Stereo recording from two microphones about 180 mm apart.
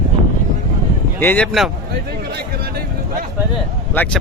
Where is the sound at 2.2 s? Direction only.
60° right (ahead or behind).